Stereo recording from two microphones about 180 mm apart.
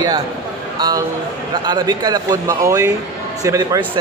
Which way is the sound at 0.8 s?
20° right (ahead or behind).